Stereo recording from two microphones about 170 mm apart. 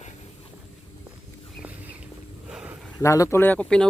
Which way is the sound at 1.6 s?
10° right (ahead or behind).